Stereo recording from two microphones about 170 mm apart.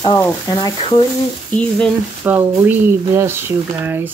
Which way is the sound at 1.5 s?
5° left (ahead or behind).